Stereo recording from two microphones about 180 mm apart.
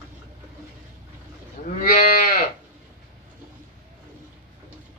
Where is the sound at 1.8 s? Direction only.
55° left (ahead or behind).